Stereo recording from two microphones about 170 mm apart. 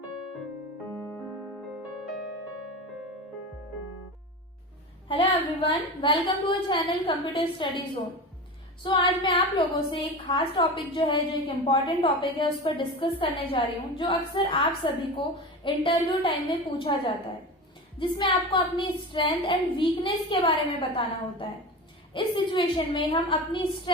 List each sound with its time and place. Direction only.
0.9 s music: 15° left (ahead or behind)
1.7 s music: centre (ahead or behind)
5.0 s a woman's voice: 30° left (ahead or behind)